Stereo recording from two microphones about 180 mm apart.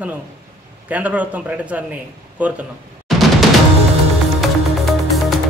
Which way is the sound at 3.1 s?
Centre (ahead or behind).